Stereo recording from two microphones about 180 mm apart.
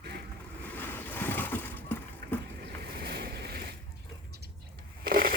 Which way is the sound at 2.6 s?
60° right (ahead or behind).